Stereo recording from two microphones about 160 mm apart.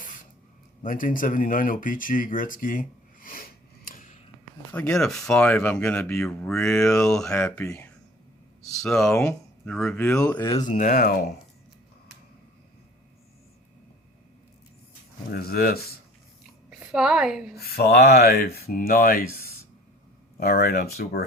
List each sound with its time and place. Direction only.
0.8 s speech: 60° left (ahead or behind)
3.8 s a sound: 60° left (ahead or behind)
4.7 s speech: 5° left (ahead or behind)
8.7 s speech: 5° left (ahead or behind)
10.4 s speech: 25° left (ahead or behind)
10.7 s speech: 55° left (ahead or behind)
15.3 s speech: 75° left (ahead or behind)
16.6 s a woman's voice: 5° right (ahead or behind)
17.6 s speech: 75° left (ahead or behind)
20.4 s speech: 75° left (ahead or behind)